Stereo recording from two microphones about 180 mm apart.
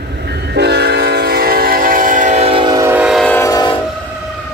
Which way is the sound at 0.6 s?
65° right (ahead or behind).